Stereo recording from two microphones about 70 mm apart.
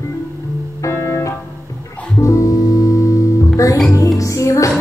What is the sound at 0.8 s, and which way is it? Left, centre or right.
Organ, left.